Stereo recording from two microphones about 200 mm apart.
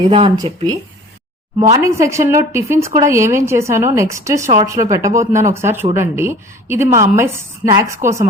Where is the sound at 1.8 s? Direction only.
15° right (ahead or behind).